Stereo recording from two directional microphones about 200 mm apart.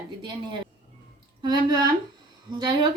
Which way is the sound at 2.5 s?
20° right (ahead or behind).